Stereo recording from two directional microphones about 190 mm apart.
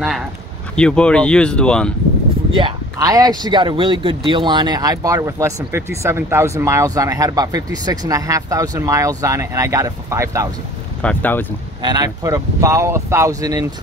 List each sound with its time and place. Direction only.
0.7 s speech: 5° left (ahead or behind)
2.5 s a man's voice: 20° right (ahead or behind)
11.0 s speech: 10° left (ahead or behind)
11.8 s a man's voice: 20° right (ahead or behind)